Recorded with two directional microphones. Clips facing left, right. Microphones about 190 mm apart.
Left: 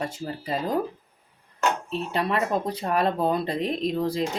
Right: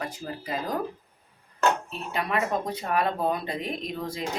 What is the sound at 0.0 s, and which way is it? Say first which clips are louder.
Speech: left 3 dB; 25° left (ahead or behind).